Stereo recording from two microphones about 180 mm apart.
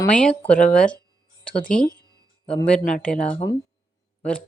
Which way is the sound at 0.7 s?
5° left (ahead or behind).